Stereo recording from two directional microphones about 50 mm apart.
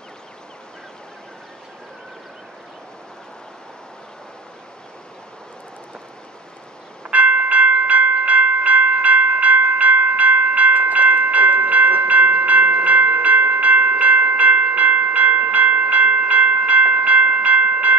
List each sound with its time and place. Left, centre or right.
7.1 s train: right